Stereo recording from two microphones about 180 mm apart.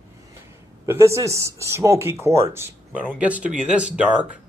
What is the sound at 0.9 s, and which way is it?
Speech, 15° right (ahead or behind).